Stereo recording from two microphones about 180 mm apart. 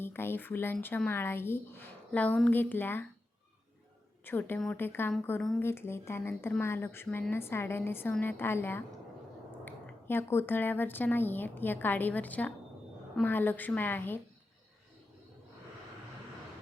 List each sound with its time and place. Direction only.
0.0 s speech: 10° left (ahead or behind)
4.2 s speech: 10° left (ahead or behind)